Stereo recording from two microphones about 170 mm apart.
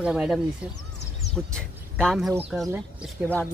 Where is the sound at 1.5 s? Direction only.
5° left (ahead or behind).